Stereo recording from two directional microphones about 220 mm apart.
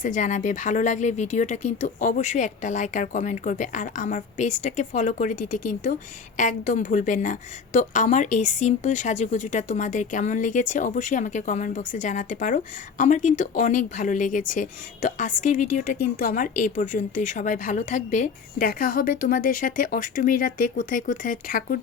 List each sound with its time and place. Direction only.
0.0 s speech: 35° left (ahead or behind)